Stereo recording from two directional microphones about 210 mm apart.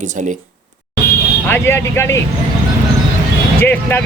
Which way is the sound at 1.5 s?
10° left (ahead or behind).